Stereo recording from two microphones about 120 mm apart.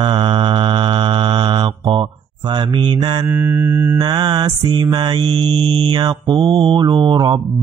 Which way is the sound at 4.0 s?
35° right (ahead or behind).